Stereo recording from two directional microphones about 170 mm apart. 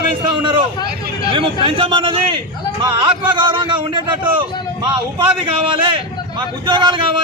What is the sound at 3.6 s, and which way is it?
Speech, 30° right (ahead or behind).